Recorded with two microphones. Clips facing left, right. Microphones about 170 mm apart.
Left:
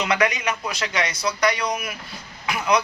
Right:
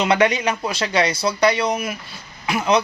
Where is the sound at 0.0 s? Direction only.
30° right (ahead or behind).